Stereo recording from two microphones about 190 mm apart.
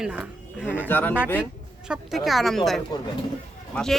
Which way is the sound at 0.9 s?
10° left (ahead or behind).